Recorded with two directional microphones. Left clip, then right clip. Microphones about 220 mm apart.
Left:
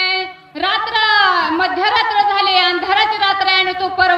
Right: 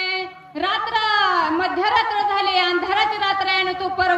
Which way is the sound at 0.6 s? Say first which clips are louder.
Left 5 dB; 5° left (ahead or behind).